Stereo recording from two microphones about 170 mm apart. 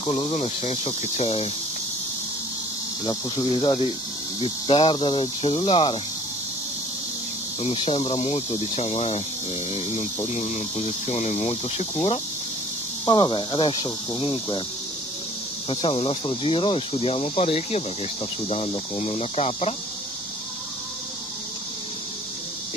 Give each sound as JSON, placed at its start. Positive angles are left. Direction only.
{"t": 0.0, "sound": "speech", "side_deg": 35}
{"t": 3.1, "sound": "speech", "side_deg": 30}
{"t": 7.6, "sound": "speech", "side_deg": 35}
{"t": 10.2, "sound": "speech", "side_deg": 40}
{"t": 13.0, "sound": "speech", "side_deg": 30}
{"t": 15.7, "sound": "speech", "side_deg": 30}